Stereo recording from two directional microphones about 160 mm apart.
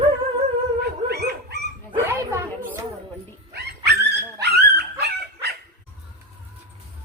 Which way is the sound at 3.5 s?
90° right.